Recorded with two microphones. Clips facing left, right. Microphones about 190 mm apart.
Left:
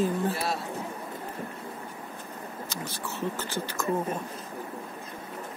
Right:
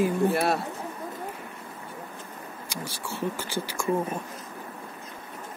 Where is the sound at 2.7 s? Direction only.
10° right (ahead or behind).